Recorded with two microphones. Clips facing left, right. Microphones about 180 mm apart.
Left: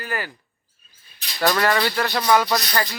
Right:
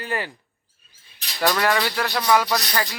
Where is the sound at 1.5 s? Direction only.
5° right (ahead or behind).